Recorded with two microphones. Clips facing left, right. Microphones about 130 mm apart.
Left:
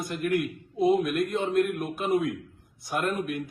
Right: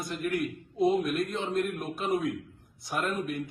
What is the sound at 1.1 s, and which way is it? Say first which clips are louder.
Speech: left 5 dB; 55° left (ahead or behind).